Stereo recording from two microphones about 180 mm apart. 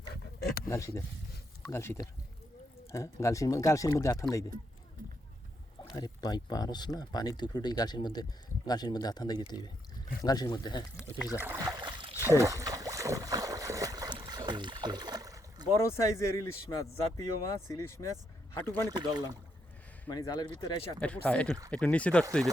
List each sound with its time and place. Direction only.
0.1 s a sound: 60° left (ahead or behind)
0.7 s speech: 15° left (ahead or behind)
5.9 s speech: 20° left (ahead or behind)
11.3 s boat: 15° right (ahead or behind)
12.3 s a sound: 15° right (ahead or behind)
15.7 s speech: 15° left (ahead or behind)
18.9 s speech: 25° right (ahead or behind)
20.1 s speech: 20° left (ahead or behind)
21.0 s speech: 5° left (ahead or behind)